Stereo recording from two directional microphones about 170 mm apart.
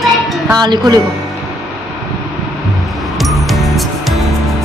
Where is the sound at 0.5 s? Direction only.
25° right (ahead or behind).